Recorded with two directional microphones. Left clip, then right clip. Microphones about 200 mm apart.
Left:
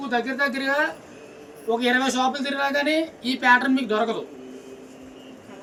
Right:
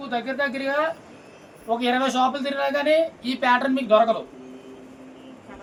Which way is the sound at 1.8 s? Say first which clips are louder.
Right 1 dB; 30° right (ahead or behind).